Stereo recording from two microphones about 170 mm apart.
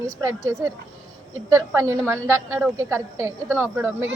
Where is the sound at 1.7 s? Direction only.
15° right (ahead or behind).